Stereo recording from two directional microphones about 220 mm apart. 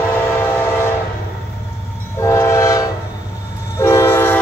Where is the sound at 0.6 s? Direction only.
10° left (ahead or behind).